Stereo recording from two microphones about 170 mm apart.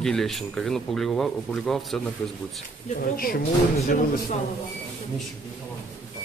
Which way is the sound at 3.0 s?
60° left (ahead or behind).